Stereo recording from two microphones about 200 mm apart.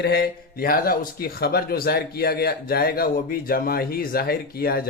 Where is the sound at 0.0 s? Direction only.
50° left (ahead or behind).